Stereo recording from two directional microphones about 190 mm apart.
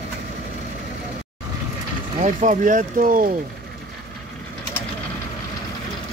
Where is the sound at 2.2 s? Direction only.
40° right (ahead or behind).